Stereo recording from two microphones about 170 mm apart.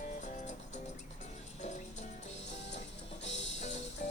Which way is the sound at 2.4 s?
90° left.